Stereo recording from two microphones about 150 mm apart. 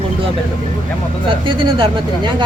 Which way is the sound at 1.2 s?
35° right (ahead or behind).